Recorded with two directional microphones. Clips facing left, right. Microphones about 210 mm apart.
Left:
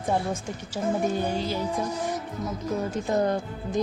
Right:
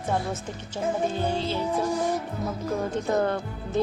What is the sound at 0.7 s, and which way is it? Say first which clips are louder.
Speech: left 1 dB; 10° left (ahead or behind).